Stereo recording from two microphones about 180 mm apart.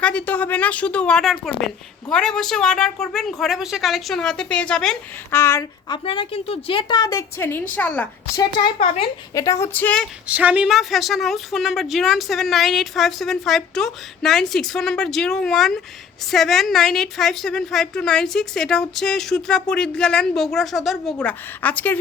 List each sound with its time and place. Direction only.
0.0 s a woman's voice: 5° left (ahead or behind)
5.4 s speech: 15° left (ahead or behind)
6.1 s a woman's voice: 30° left (ahead or behind); by 8.0 s 10° left (ahead or behind)
8.4 s a woman's voice: 25° left (ahead or behind)
9.3 s speech: 20° left (ahead or behind)
10.2 s a woman's voice: 10° right (ahead or behind); by 21.9 s 10° left (ahead or behind)